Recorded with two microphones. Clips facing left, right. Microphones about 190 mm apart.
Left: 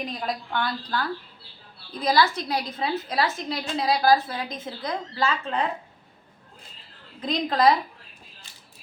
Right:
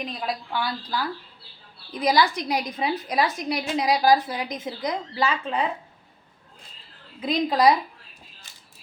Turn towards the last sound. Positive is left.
turn(degrees=-10)  # may be behind; listen again after turning